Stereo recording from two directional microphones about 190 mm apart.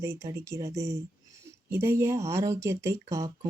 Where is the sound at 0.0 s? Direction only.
15° right (ahead or behind).